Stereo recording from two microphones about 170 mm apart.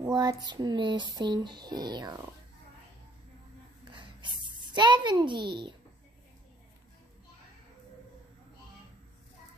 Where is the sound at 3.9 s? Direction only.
30° right (ahead or behind).